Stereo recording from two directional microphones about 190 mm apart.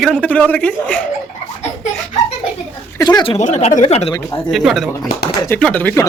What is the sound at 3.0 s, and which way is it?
Speech, 25° left (ahead or behind).